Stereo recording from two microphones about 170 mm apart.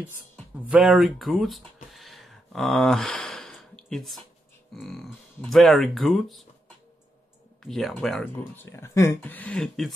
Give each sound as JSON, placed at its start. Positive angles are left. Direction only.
{"t": 0.7, "sound": "speech", "side_deg": -5}
{"t": 7.6, "sound": "speech", "side_deg": 0}
{"t": 8.7, "sound": "speech", "side_deg": 15}